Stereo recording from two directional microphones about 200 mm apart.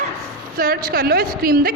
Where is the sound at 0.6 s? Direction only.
50° right (ahead or behind).